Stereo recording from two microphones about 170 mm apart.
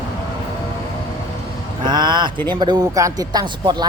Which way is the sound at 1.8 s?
25° right (ahead or behind).